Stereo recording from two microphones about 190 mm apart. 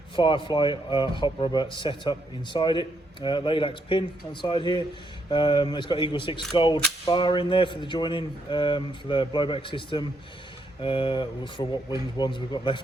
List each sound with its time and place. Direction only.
0.2 s a man's voice: 25° left (ahead or behind)